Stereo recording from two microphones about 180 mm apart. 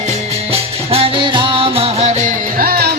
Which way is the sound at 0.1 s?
35° right (ahead or behind).